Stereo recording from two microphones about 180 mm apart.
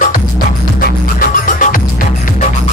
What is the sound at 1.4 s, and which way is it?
Music, 45° left (ahead or behind).